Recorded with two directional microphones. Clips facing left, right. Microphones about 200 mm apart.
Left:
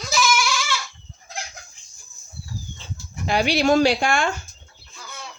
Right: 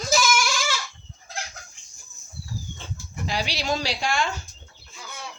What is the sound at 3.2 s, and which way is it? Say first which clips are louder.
Speech: left 9 dB; 55° left (ahead or behind).